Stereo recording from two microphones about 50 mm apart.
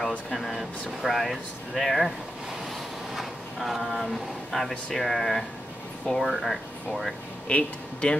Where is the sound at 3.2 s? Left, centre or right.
Centre.